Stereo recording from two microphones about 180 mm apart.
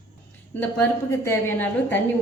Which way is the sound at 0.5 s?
10° left (ahead or behind).